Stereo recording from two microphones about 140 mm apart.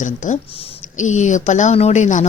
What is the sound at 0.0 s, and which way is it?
Speech, 65° left (ahead or behind).